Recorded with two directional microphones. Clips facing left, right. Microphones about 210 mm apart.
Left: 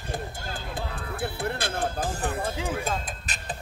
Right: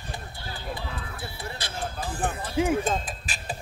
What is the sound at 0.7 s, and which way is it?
Music, 50° left (ahead or behind).